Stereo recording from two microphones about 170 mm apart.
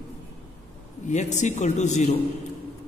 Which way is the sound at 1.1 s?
45° left (ahead or behind).